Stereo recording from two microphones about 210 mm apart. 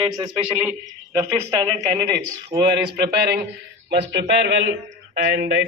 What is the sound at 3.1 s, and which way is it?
A man's voice, 50° right (ahead or behind).